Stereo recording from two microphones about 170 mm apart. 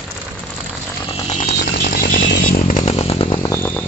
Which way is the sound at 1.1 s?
35° left (ahead or behind).